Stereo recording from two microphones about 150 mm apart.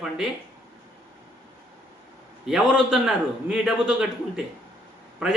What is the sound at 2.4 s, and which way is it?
Speech, 5° right (ahead or behind).